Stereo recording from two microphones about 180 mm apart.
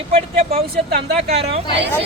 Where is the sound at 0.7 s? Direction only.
60° right (ahead or behind).